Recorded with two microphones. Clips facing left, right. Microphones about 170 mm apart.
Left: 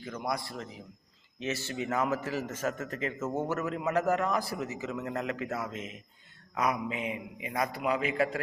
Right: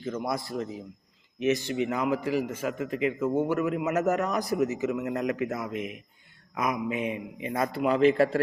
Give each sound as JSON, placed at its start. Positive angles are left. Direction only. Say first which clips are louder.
{"t": 0.1, "sound": "a man's voice", "louder": "right 4 dB", "side_deg": -25}
{"t": 7.0, "sound": "a man's voice", "louder": "right 5 dB", "side_deg": 20}
{"t": 7.5, "sound": "a man's voice", "louder": "right 4 dB", "side_deg": -25}